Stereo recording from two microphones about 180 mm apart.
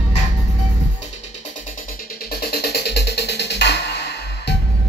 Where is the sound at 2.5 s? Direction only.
65° left (ahead or behind).